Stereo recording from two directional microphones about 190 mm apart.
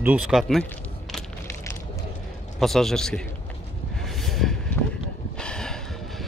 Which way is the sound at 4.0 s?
Centre (ahead or behind).